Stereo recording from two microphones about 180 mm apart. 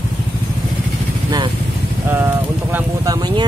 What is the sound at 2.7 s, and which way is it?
Speech, 20° right (ahead or behind).